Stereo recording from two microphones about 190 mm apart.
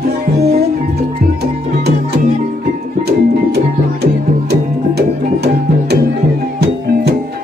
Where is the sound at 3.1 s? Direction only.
60° right (ahead or behind).